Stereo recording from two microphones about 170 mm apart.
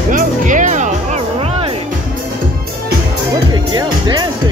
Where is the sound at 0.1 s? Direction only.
50° right (ahead or behind).